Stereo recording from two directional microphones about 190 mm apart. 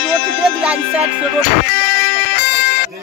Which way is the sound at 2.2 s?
60° left (ahead or behind).